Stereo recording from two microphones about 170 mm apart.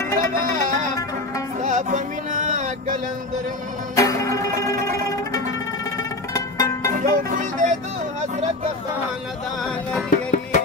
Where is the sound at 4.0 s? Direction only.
20° left (ahead or behind).